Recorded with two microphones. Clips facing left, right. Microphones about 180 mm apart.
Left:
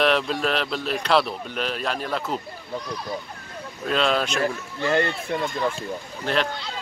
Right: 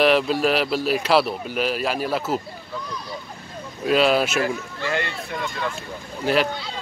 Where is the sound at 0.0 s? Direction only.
5° right (ahead or behind).